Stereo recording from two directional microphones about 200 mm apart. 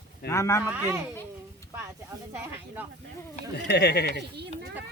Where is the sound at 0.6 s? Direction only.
10° right (ahead or behind).